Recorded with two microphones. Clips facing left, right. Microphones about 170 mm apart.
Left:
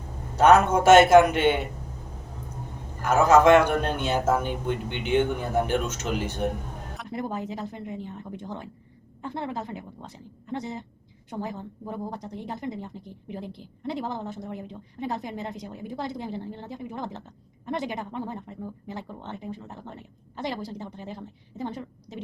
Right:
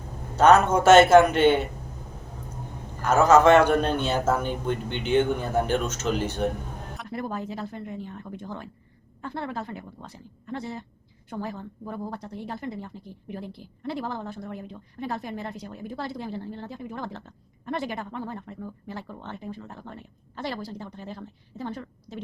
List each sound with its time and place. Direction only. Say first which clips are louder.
0.3 s speech: even; 15° left (ahead or behind)
3.1 s speech: even; 15° left (ahead or behind)